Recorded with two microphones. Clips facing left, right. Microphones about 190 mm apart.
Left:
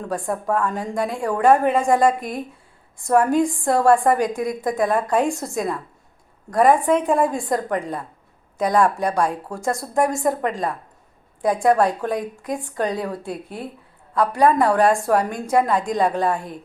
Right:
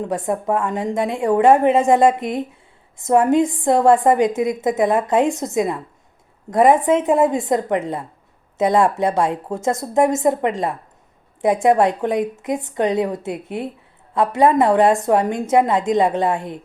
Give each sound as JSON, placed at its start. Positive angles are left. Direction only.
{"t": 0.0, "sound": "a woman's voice", "side_deg": -20}